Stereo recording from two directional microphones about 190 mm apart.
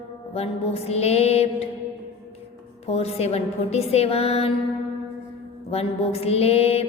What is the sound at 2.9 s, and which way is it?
Speech, 30° left (ahead or behind).